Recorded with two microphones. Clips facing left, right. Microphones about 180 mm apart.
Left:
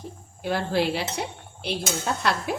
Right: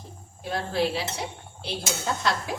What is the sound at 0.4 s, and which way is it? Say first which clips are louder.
Speech: left 2 dB; 70° left (ahead or behind).